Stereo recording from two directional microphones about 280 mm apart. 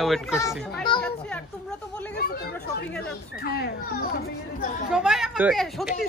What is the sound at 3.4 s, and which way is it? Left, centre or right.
Children playing, left.